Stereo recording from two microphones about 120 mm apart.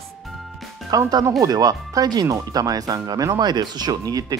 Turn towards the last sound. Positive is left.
turn(degrees=-30)  # may be behind; listen again after turning